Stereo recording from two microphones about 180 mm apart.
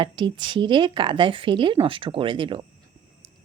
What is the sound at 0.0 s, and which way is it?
A woman's voice, 25° right (ahead or behind).